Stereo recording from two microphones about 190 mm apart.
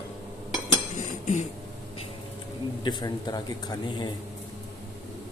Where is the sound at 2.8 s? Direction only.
20° left (ahead or behind).